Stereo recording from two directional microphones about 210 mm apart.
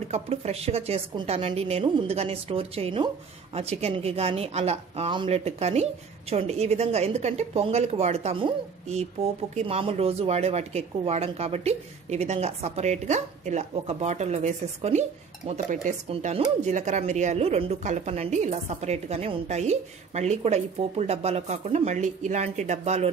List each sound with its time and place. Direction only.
0.1 s a woman's voice: 30° right (ahead or behind)